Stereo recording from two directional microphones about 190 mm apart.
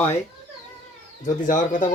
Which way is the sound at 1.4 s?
40° left (ahead or behind).